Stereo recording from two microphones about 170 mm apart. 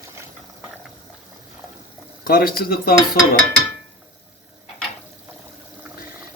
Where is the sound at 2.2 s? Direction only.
60° left (ahead or behind).